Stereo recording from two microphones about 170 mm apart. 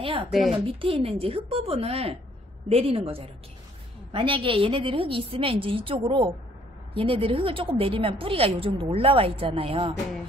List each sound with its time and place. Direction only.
0.3 s a woman's voice: centre (ahead or behind)
0.7 s a woman's voice: 35° right (ahead or behind)